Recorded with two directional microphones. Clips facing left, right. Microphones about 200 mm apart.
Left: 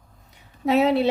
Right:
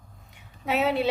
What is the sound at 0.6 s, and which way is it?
Speech, 40° left (ahead or behind).